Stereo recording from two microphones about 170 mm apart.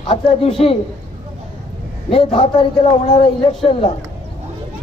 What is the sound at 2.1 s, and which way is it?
A man's voice, 30° left (ahead or behind).